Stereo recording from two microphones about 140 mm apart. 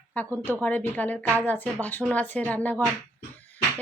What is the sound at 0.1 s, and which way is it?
A woman's voice, 10° left (ahead or behind).